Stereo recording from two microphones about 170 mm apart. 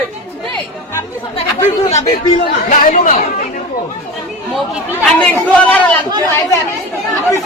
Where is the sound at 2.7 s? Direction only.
45° left (ahead or behind).